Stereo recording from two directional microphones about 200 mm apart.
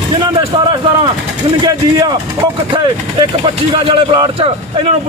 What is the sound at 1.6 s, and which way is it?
Speech, 20° right (ahead or behind).